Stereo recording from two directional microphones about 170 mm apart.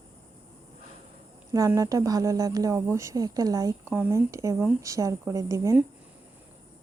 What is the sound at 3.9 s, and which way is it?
A woman's voice, 10° right (ahead or behind).